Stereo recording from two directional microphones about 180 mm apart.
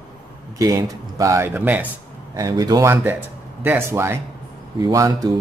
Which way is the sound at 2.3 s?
20° right (ahead or behind).